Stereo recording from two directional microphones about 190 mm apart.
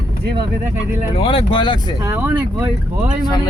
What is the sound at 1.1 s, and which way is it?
Speech, 30° left (ahead or behind).